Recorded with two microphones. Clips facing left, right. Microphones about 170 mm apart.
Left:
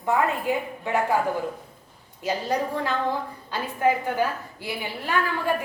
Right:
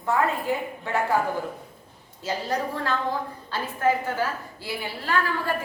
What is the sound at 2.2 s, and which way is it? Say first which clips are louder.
A woman's voice: left 2 dB; 15° left (ahead or behind).